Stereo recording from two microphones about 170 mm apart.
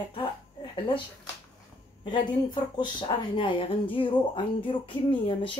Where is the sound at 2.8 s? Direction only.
30° left (ahead or behind).